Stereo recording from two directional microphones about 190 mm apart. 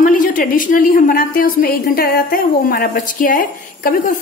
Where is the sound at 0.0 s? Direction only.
45° left (ahead or behind).